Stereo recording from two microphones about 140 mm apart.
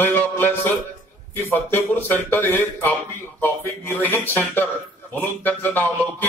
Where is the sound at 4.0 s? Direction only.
15° left (ahead or behind).